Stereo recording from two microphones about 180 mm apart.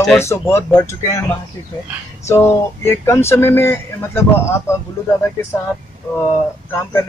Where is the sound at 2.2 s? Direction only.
15° left (ahead or behind).